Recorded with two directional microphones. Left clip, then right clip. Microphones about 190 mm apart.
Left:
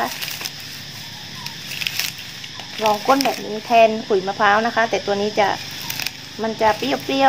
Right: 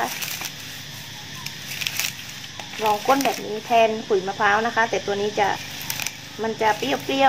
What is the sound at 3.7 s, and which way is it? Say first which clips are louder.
A woman's voice: left 4 dB; 40° left (ahead or behind).